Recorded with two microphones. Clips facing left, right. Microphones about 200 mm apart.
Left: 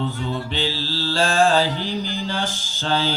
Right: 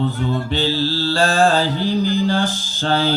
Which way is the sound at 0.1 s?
45° right (ahead or behind).